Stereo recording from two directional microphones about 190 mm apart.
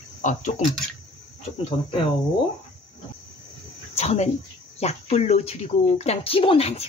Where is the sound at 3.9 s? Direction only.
35° left (ahead or behind).